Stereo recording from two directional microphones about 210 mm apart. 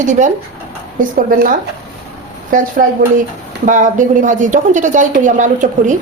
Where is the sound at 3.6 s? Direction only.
35° right (ahead or behind).